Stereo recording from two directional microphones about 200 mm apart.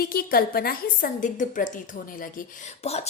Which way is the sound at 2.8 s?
30° left (ahead or behind).